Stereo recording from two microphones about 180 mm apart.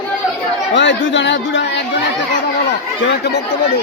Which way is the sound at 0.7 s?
85° left.